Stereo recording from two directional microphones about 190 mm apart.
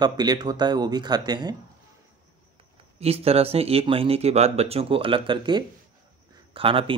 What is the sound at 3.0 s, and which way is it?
Speech, 30° right (ahead or behind).